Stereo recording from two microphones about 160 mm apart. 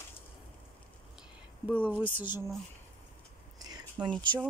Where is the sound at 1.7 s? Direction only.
10° right (ahead or behind).